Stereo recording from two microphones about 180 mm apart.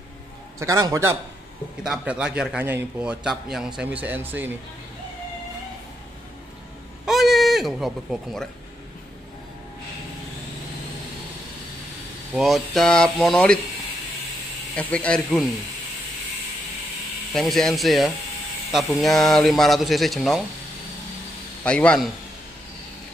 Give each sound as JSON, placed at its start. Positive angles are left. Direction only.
{"t": 0.6, "sound": "a man's voice", "side_deg": -20}
{"t": 1.8, "sound": "a man's voice", "side_deg": -5}
{"t": 7.1, "sound": "a sound", "side_deg": 0}
{"t": 12.4, "sound": "speech", "side_deg": 0}
{"t": 14.8, "sound": "speech", "side_deg": 5}
{"t": 17.3, "sound": "speech", "side_deg": 0}
{"t": 21.6, "sound": "speech", "side_deg": 5}